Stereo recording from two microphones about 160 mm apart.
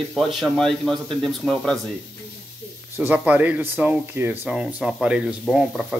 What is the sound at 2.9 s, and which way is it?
A man's voice, 10° right (ahead or behind).